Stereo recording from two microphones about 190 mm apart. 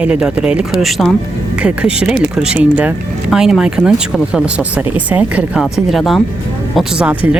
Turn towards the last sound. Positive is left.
turn(degrees=-5)  # may be behind; listen again after turning